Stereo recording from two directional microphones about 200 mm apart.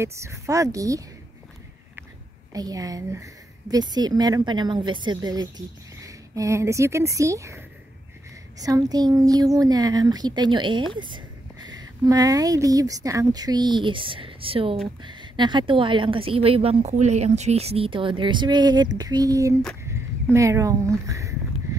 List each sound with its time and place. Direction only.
0.0 s speech: 15° right (ahead or behind)
2.5 s a woman's voice: 20° right (ahead or behind)